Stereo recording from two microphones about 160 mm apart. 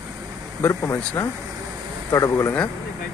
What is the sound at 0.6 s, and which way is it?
Speech, 15° left (ahead or behind).